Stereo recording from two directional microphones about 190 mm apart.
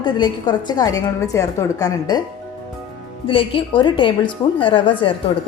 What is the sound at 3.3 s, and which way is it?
A woman's voice, 25° left (ahead or behind).